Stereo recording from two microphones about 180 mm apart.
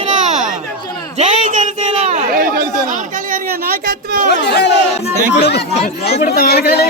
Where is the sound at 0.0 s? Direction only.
40° right (ahead or behind).